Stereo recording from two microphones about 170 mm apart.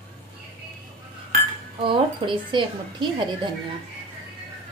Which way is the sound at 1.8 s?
30° right (ahead or behind).